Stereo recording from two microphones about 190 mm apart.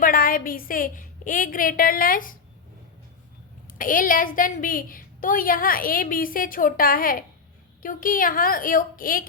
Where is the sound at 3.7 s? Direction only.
45° left (ahead or behind).